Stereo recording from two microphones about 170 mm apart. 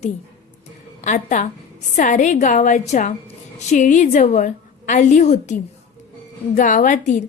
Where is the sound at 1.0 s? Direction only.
45° left (ahead or behind).